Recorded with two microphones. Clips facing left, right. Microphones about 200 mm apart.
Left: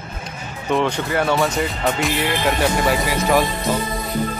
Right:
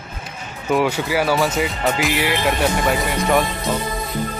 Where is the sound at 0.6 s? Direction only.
5° right (ahead or behind).